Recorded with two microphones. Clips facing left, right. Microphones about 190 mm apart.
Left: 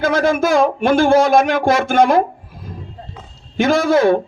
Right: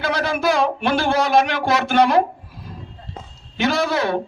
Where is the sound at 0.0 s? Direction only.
45° left (ahead or behind).